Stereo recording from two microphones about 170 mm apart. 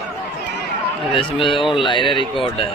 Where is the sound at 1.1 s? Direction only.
30° left (ahead or behind).